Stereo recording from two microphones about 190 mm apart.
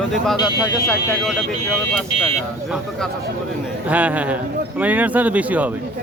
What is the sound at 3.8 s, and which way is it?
Speech, 10° right (ahead or behind).